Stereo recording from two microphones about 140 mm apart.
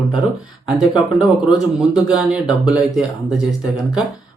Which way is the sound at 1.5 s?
5° right (ahead or behind).